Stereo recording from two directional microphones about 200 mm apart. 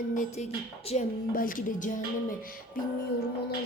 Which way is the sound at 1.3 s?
45° left (ahead or behind).